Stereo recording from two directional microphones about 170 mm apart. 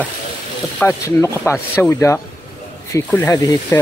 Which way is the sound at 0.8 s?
15° left (ahead or behind).